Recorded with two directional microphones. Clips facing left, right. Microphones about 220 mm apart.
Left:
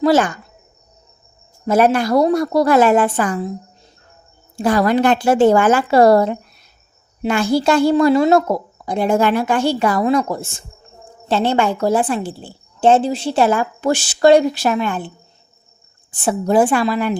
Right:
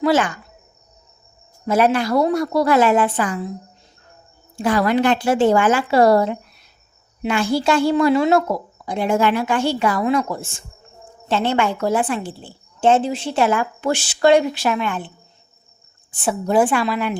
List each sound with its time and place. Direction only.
0.0 s speech: 40° left (ahead or behind)
1.6 s a woman's voice: 45° left (ahead or behind)
4.5 s a woman's voice: 40° left (ahead or behind)
11.3 s a woman's voice: 35° left (ahead or behind)
16.2 s a woman's voice: 40° left (ahead or behind)